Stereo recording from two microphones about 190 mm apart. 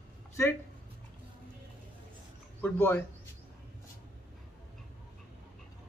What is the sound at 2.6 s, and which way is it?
Speech, 10° left (ahead or behind).